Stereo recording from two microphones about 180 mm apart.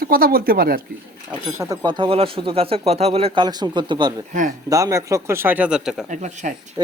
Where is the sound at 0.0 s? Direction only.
55° right (ahead or behind).